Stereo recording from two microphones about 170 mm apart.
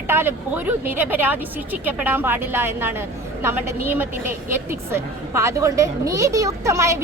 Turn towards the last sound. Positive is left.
turn(degrees=-15)  # may be behind; listen again after turning